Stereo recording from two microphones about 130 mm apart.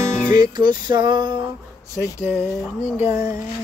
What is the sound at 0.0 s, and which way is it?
Music, 30° right (ahead or behind).